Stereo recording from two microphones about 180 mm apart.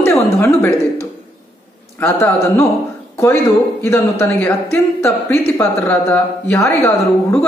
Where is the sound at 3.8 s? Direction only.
15° left (ahead or behind).